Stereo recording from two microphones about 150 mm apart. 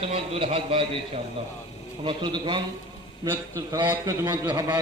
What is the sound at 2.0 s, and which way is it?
Speech, 30° right (ahead or behind).